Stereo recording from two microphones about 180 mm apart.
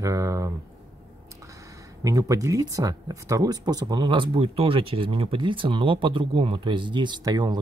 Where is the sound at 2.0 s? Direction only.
20° right (ahead or behind).